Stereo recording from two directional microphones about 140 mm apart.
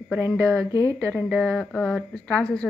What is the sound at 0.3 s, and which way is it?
A woman's voice, 5° left (ahead or behind).